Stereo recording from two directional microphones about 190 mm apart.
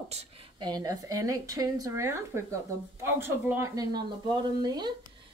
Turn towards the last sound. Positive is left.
turn(degrees=-20)  # may be behind; listen again after turning